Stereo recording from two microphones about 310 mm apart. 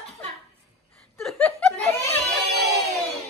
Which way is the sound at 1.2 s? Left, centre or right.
Centre.